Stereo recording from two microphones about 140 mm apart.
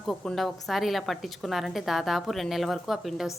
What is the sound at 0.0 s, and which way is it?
A woman's voice, centre (ahead or behind).